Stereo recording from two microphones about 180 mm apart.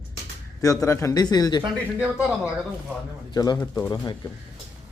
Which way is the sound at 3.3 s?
25° left (ahead or behind).